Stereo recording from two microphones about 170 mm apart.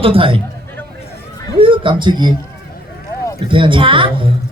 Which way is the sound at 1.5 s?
30° right (ahead or behind).